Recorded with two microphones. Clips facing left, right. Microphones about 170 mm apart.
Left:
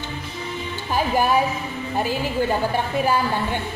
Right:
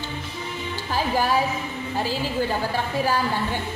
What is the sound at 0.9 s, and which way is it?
A woman's voice, 15° left (ahead or behind).